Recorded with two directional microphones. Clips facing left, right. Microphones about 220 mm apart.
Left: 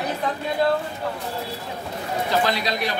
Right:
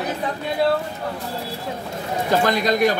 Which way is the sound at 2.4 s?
50° right (ahead or behind).